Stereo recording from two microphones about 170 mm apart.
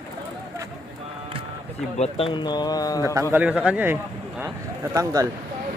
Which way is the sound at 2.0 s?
35° left (ahead or behind).